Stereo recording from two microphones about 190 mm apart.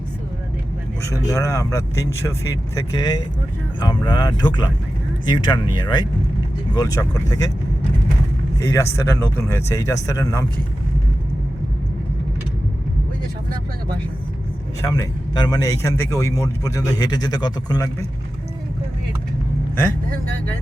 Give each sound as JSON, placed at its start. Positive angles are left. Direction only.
{"t": 1.0, "sound": "speech", "side_deg": 15}
{"t": 8.5, "sound": "speech", "side_deg": 15}
{"t": 14.8, "sound": "speech", "side_deg": 20}